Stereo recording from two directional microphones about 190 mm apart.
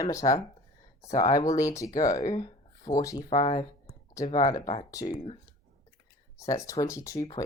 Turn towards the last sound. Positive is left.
turn(degrees=20)  # may be behind; listen again after turning